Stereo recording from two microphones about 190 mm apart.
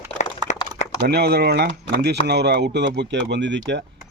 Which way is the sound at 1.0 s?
60° right (ahead or behind).